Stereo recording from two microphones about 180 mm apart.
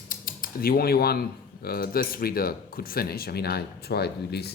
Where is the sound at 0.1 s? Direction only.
50° left (ahead or behind).